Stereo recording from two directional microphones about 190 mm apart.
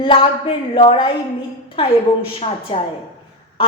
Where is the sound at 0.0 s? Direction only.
30° left (ahead or behind).